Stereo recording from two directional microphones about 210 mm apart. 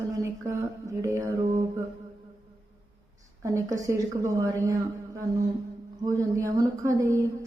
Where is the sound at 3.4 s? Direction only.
15° right (ahead or behind).